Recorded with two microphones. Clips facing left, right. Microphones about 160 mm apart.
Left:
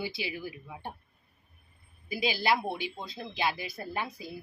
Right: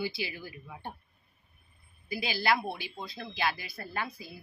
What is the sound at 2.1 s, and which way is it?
Speech, 20° left (ahead or behind).